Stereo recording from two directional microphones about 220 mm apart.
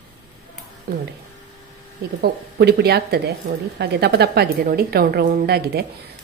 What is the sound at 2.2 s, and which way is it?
A woman's voice, 45° right (ahead or behind).